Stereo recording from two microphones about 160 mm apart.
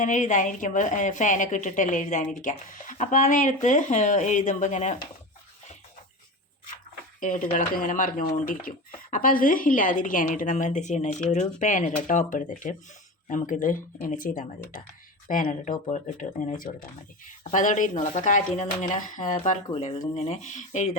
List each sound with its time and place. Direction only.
0.0 s a woman's voice: 50° left (ahead or behind)
7.2 s a woman's voice: 55° left (ahead or behind)
19.5 s a woman's voice: 45° left (ahead or behind)